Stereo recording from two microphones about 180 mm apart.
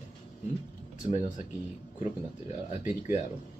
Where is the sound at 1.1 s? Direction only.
45° left (ahead or behind).